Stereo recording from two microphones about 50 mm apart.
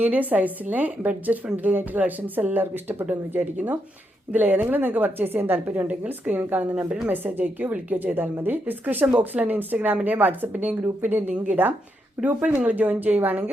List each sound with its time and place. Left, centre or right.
0.0 s a woman's voice: right
5.9 s a woman's voice: right
12.2 s a woman's voice: right